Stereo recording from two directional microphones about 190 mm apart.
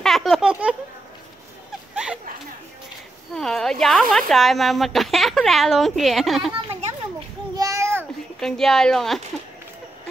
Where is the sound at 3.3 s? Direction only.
5° left (ahead or behind).